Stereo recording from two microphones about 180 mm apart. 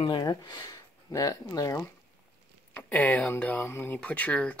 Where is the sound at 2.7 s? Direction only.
10° left (ahead or behind).